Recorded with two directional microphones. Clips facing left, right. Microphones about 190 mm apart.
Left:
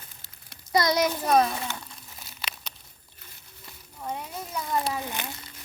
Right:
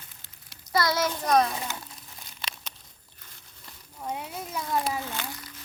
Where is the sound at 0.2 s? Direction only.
40° left (ahead or behind).